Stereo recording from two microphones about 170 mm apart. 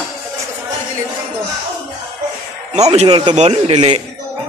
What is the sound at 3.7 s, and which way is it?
Speech, 30° right (ahead or behind).